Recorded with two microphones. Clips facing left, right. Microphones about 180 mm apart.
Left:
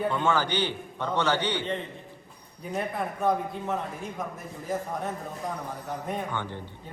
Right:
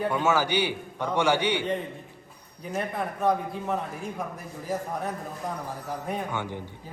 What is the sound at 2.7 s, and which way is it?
A man's voice, centre (ahead or behind).